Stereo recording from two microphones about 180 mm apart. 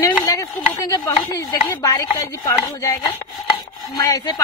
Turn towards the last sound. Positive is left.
turn(degrees=20)  # may be behind; listen again after turning